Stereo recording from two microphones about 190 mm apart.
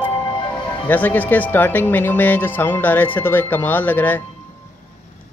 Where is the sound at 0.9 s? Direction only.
10° left (ahead or behind).